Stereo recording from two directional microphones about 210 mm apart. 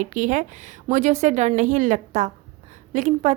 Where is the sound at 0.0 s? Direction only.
40° right (ahead or behind).